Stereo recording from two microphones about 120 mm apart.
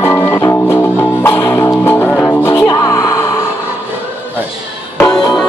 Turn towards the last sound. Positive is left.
turn(degrees=5)  # may be behind; listen again after turning